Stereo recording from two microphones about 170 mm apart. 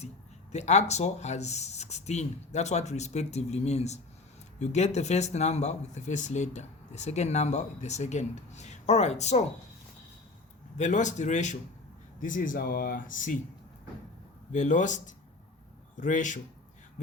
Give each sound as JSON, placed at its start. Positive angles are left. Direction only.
{"t": 0.5, "sound": "speech", "side_deg": 40}
{"t": 10.8, "sound": "speech", "side_deg": 45}
{"t": 14.5, "sound": "speech", "side_deg": 45}